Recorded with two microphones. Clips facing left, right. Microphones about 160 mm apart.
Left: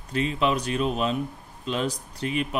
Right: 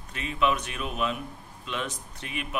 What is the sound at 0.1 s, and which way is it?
A man's voice, 30° left (ahead or behind).